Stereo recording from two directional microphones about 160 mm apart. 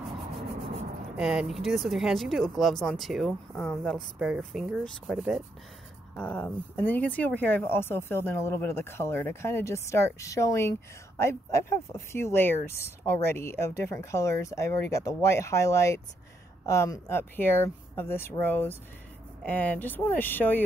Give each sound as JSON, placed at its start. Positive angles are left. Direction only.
{"t": 1.1, "sound": "speech", "side_deg": -5}
{"t": 6.1, "sound": "speech", "side_deg": 10}